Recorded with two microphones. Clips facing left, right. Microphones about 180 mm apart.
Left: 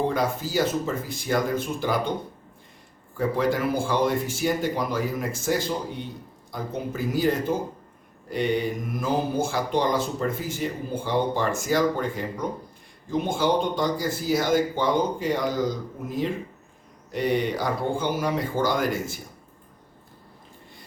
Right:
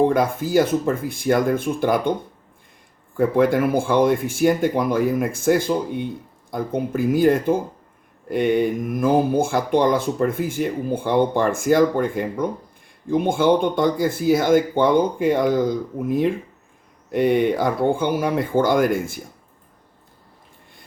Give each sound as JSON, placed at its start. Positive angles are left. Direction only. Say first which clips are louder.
{"t": 0.0, "sound": "speech", "louder": "right 7 dB", "side_deg": -55}
{"t": 3.2, "sound": "speech", "louder": "right 7 dB", "side_deg": -55}